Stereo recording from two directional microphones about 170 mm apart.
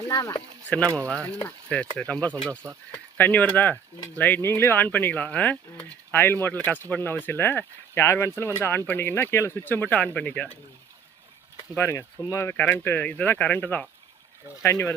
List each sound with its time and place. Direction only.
0.1 s speech: 20° left (ahead or behind)
0.9 s speech: 10° left (ahead or behind)
11.8 s speech: 15° left (ahead or behind)